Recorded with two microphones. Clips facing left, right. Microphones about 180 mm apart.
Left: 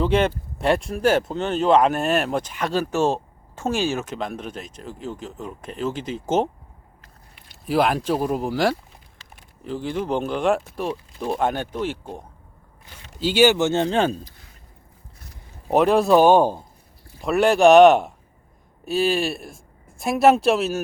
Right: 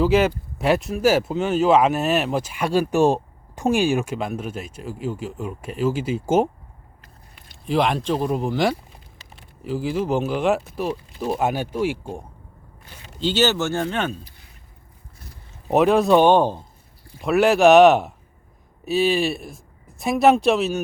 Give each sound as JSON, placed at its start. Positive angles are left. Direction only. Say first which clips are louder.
{"t": 0.0, "sound": "speech", "louder": "right 2 dB", "side_deg": -5}
{"t": 7.7, "sound": "speech", "louder": "even", "side_deg": 5}
{"t": 13.1, "sound": "speech", "louder": "left 3 dB", "side_deg": 10}
{"t": 13.8, "sound": "speech", "louder": "left 4 dB", "side_deg": 30}
{"t": 15.7, "sound": "speech", "louder": "even", "side_deg": 0}
{"t": 17.2, "sound": "speech", "louder": "right 1 dB", "side_deg": 0}